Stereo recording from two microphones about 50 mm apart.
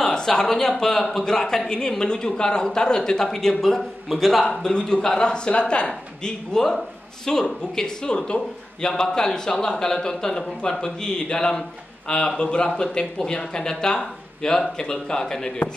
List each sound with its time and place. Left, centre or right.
0.0 s a man's voice: centre